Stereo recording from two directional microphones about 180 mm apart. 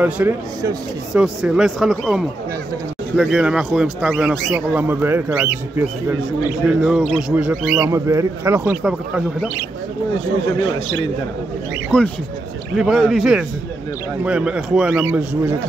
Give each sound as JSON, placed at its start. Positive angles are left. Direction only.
{"t": 0.0, "sound": "speech", "side_deg": -10}
{"t": 1.1, "sound": "speech", "side_deg": 0}
{"t": 6.7, "sound": "speech", "side_deg": -5}
{"t": 8.8, "sound": "speech", "side_deg": -5}
{"t": 11.9, "sound": "speech", "side_deg": 5}